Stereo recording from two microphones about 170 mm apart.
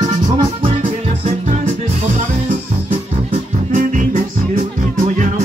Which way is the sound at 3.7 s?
50° right (ahead or behind).